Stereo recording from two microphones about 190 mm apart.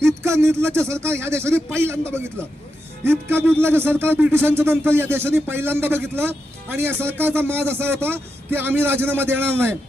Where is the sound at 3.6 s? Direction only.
10° right (ahead or behind).